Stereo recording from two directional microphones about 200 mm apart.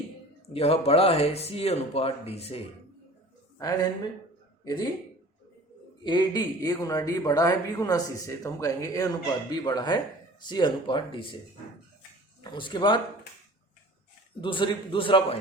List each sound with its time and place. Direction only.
0.5 s speech: 30° left (ahead or behind)
4.6 s speech: 20° left (ahead or behind)
6.1 s speech: 20° left (ahead or behind)
12.4 s speech: 25° left (ahead or behind)
14.4 s speech: 25° left (ahead or behind)